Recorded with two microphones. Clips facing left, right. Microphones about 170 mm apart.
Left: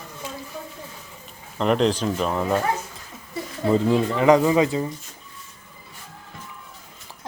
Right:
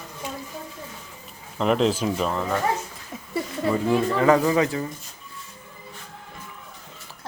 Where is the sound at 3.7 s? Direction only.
20° left (ahead or behind).